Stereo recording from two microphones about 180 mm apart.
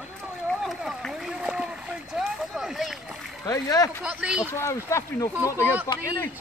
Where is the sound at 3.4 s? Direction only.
20° left (ahead or behind).